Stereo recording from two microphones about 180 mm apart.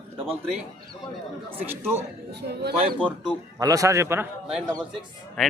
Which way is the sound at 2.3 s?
65° right (ahead or behind).